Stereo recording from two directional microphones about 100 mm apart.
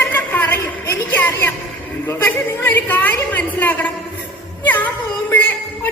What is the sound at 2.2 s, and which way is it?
A woman's voice, 20° left (ahead or behind).